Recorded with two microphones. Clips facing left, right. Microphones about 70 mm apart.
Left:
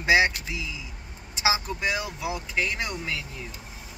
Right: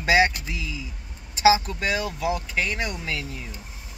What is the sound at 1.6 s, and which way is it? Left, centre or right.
Speech, centre.